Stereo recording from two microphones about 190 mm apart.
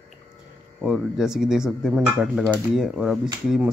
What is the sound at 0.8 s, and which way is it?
A man's voice, 5° right (ahead or behind).